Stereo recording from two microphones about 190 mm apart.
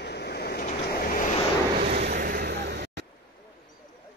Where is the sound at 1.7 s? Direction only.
35° right (ahead or behind).